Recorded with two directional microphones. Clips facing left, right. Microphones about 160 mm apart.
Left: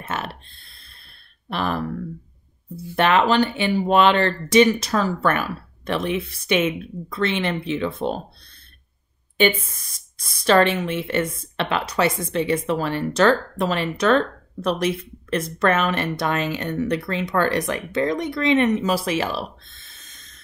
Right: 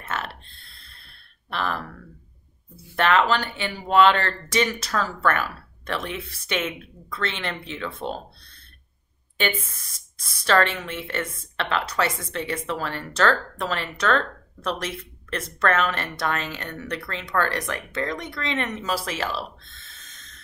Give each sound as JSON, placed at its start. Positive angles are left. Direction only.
{"t": 0.0, "sound": "a sound", "side_deg": 15}
{"t": 3.0, "sound": "speech", "side_deg": 20}
{"t": 10.1, "sound": "speech", "side_deg": 15}